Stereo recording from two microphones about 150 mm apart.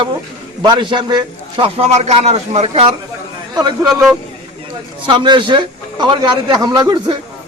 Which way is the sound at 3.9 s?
Centre (ahead or behind).